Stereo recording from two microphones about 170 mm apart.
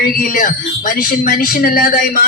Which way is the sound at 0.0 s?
55° left (ahead or behind).